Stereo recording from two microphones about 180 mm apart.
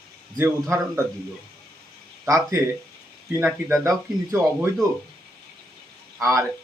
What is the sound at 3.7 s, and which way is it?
Speech, 15° right (ahead or behind).